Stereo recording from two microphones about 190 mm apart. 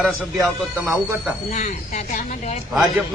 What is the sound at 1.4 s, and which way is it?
Speech, 40° left (ahead or behind).